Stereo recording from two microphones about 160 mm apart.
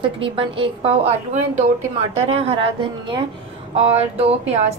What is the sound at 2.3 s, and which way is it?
A woman's voice, 40° right (ahead or behind).